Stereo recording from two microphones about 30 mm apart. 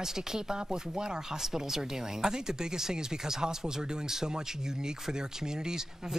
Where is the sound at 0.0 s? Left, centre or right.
Centre.